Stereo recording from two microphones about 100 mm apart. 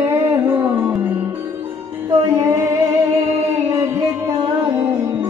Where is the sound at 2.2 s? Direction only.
30° right (ahead or behind).